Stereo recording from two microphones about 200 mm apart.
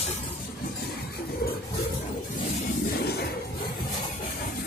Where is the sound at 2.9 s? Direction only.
50° left (ahead or behind).